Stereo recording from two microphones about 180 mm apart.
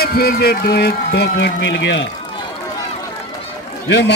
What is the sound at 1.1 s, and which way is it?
Speech, 75° left (ahead or behind).